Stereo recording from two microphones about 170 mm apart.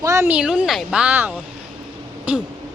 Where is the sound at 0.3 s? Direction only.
5° right (ahead or behind).